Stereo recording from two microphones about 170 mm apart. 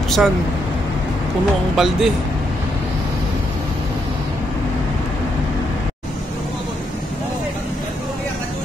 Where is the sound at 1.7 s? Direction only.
Centre (ahead or behind).